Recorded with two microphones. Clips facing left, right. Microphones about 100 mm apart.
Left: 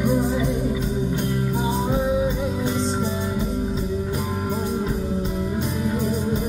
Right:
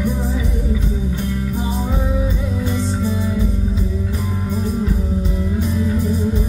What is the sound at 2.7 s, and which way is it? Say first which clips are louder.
Music: right 2 dB; 25° left (ahead or behind).